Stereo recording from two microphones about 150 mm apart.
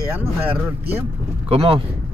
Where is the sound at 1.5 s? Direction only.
40° right (ahead or behind).